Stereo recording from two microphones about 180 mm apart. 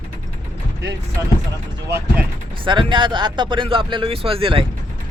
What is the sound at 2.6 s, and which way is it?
Speech, 25° right (ahead or behind).